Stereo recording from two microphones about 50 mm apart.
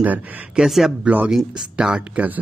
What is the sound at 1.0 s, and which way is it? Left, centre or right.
Speech, right.